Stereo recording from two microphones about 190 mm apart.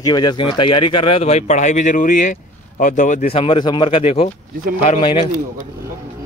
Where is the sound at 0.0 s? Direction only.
20° left (ahead or behind); by 3.3 s 40° left (ahead or behind).